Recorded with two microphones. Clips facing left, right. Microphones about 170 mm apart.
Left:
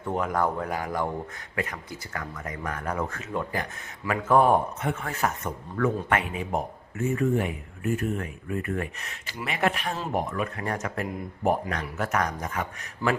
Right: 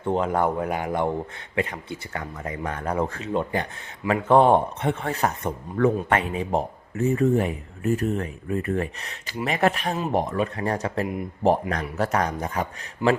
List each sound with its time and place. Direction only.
0.0 s speech: 25° right (ahead or behind)
13.0 s a man's voice: 20° right (ahead or behind)